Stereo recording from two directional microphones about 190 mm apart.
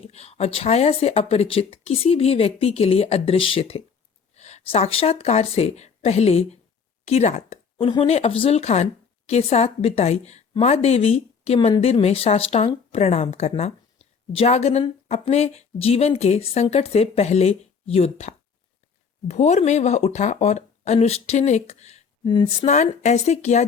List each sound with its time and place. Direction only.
0.1 s speech: 35° left (ahead or behind)
22.2 s speech: 25° left (ahead or behind)